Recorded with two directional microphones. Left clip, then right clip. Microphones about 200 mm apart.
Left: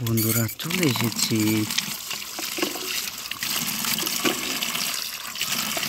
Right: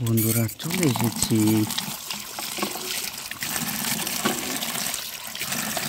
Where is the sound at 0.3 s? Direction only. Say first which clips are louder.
Left 1 dB; 5° right (ahead or behind).